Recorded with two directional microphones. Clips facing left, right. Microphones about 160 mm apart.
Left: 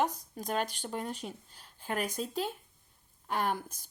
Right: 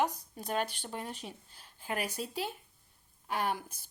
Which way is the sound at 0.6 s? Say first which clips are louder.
Left 1 dB; 40° left (ahead or behind).